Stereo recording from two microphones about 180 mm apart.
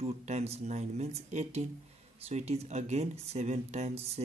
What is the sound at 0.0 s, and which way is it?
Speech, 35° right (ahead or behind).